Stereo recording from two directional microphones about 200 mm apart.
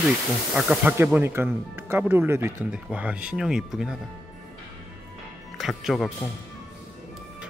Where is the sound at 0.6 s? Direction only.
5° right (ahead or behind).